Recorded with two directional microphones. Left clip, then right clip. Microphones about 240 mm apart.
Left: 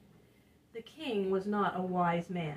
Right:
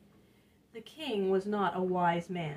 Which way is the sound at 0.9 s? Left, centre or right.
Right.